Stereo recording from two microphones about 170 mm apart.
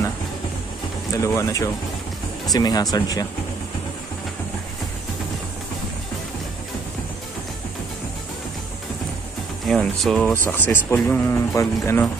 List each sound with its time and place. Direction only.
1.1 s speech: 20° left (ahead or behind)
9.7 s speech: 5° left (ahead or behind)
10.3 s speech: 10° left (ahead or behind)